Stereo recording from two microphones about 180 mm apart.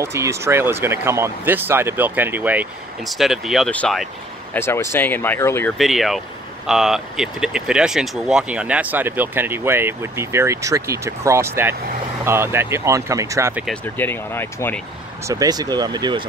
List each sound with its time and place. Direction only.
0.0 s speech: 15° right (ahead or behind); by 4.1 s 5° left (ahead or behind)
4.6 s speech: 15° left (ahead or behind)
5.8 s speech: centre (ahead or behind)
13.8 s speech: 10° left (ahead or behind)
15.2 s speech: 20° right (ahead or behind)